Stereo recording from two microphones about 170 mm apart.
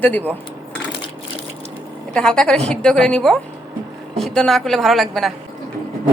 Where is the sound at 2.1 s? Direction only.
5° left (ahead or behind).